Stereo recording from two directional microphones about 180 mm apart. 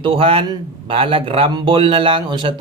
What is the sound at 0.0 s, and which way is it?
A man's voice, 30° right (ahead or behind).